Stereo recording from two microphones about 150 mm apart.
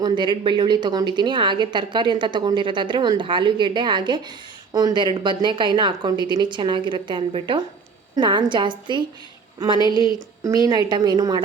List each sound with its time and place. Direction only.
0.0 s a woman's voice: 30° right (ahead or behind)